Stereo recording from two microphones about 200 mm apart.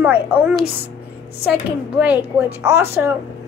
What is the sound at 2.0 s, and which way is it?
A woman's voice, 10° right (ahead or behind).